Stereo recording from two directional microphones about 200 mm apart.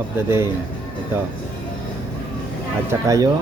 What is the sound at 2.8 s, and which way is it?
Speech, 15° right (ahead or behind).